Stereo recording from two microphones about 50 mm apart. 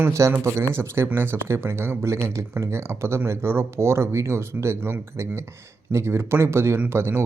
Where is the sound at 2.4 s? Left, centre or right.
Right.